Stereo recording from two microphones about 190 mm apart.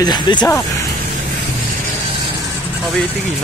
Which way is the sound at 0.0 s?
20° left (ahead or behind).